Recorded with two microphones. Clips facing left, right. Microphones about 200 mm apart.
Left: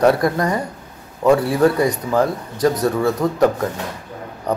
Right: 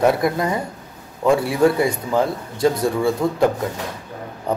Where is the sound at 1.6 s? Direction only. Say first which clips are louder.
Even; 25° right (ahead or behind).